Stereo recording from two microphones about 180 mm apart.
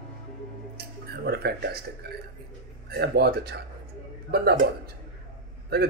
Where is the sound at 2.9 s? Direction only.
60° right (ahead or behind).